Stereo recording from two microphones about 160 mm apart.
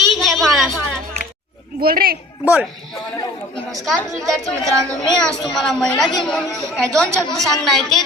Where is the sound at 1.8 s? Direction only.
65° right (ahead or behind).